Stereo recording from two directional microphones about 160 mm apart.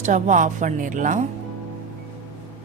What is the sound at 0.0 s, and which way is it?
A woman's voice, 50° right (ahead or behind).